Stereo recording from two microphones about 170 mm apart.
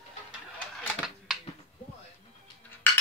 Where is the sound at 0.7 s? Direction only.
Centre (ahead or behind).